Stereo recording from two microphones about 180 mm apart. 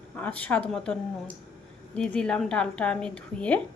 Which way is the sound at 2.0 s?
5° left (ahead or behind).